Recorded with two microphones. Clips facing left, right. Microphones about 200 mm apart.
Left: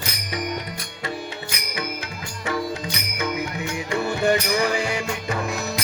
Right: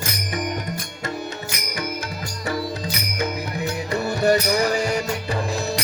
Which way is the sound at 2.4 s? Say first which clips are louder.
Even; 35° right (ahead or behind).